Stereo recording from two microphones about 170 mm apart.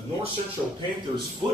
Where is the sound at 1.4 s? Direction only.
30° right (ahead or behind).